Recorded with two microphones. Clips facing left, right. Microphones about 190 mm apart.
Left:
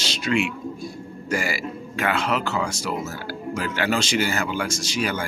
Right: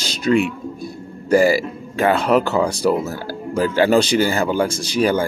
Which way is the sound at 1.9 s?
35° right (ahead or behind).